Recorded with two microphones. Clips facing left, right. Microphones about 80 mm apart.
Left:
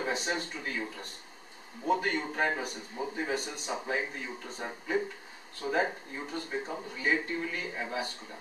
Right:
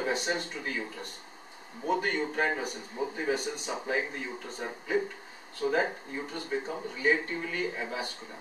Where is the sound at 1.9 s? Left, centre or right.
Centre.